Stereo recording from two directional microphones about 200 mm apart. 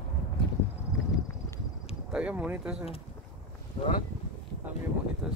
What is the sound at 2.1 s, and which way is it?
Speech, 5° right (ahead or behind).